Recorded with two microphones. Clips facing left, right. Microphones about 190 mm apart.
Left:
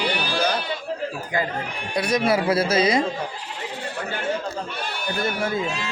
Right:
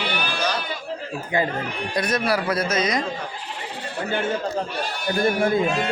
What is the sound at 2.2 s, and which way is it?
Speech, 25° left (ahead or behind).